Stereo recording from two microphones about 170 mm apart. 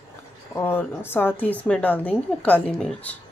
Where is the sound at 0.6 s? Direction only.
15° left (ahead or behind).